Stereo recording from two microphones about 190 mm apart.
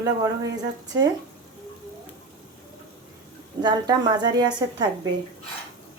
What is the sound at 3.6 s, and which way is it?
A woman's voice, 20° right (ahead or behind).